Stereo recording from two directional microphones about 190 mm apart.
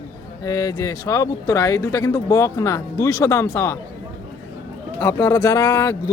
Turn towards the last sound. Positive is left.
turn(degrees=15)  # may be behind; listen again after turning